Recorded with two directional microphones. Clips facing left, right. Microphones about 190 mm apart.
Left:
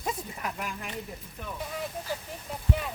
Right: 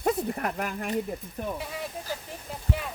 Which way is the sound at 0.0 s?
60° right (ahead or behind).